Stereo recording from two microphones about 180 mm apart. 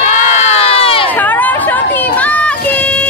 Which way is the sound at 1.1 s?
10° left (ahead or behind).